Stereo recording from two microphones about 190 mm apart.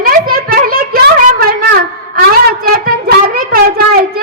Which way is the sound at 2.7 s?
50° right (ahead or behind).